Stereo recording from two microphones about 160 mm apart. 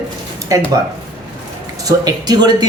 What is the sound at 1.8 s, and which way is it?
Speech, 25° right (ahead or behind).